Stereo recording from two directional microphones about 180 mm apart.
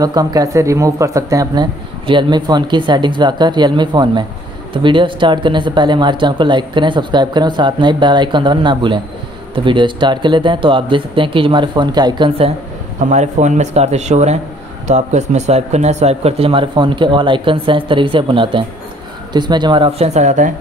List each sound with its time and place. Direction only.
0.0 s speech: 20° right (ahead or behind)
13.1 s speech: 40° right (ahead or behind)
20.2 s speech: 40° right (ahead or behind)